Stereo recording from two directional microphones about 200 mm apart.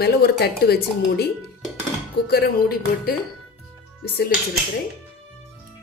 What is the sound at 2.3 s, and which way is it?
Speech, 50° left (ahead or behind).